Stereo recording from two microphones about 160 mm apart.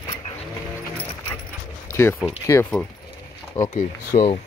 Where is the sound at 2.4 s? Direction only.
20° left (ahead or behind).